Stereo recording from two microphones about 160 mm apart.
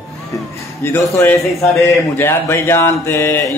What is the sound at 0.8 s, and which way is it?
Speech, 15° left (ahead or behind).